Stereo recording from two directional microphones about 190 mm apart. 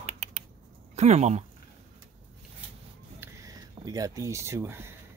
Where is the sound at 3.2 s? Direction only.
20° right (ahead or behind).